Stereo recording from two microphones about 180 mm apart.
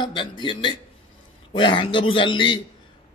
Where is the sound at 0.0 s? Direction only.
25° left (ahead or behind).